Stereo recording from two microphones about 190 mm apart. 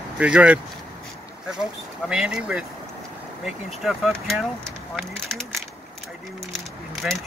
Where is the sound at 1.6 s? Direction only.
5° right (ahead or behind).